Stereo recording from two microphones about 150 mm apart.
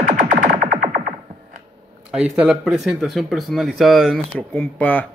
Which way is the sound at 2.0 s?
5° right (ahead or behind).